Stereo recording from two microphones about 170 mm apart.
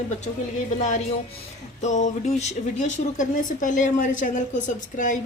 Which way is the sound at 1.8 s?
45° left (ahead or behind).